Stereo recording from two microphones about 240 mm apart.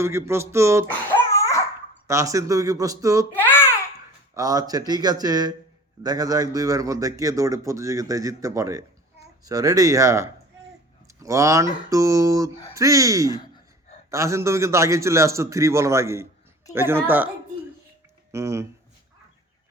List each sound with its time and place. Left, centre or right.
0.0 s a man's voice: centre
0.9 s babbling: centre
2.0 s a man's voice: centre
3.4 s babbling: centre
4.4 s a man's voice: centre
18.3 s speech: centre